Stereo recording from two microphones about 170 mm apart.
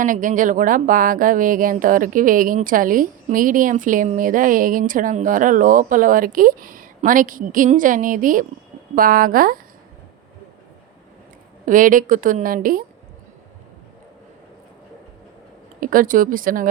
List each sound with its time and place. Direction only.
0.0 s speech: 50° right (ahead or behind)
11.6 s speech: 50° right (ahead or behind)
15.8 s speech: 55° right (ahead or behind)